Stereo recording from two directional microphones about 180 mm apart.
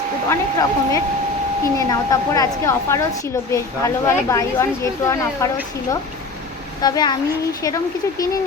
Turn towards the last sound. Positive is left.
turn(degrees=20)  # may be behind; listen again after turning